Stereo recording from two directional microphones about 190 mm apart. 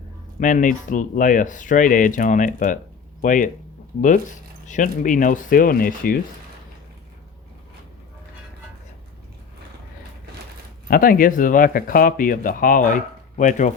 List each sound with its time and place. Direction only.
0.3 s speech: 45° left (ahead or behind)
4.7 s speech: 45° left (ahead or behind)
10.8 s speech: 50° left (ahead or behind)